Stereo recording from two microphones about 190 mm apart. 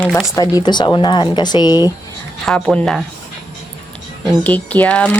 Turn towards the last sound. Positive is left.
turn(degrees=5)  # may be behind; listen again after turning